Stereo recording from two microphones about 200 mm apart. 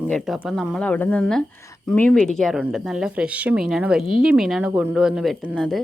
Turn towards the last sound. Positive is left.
turn(degrees=0)  # may be behind; listen again after turning